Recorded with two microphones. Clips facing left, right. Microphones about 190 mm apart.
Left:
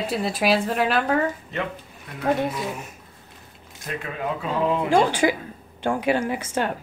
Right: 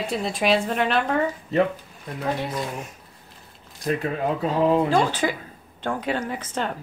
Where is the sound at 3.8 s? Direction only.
35° right (ahead or behind).